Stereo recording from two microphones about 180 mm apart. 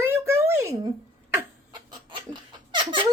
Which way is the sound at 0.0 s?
15° right (ahead or behind).